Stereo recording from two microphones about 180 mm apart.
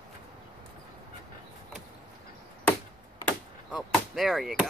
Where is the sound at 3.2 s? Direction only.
Centre (ahead or behind).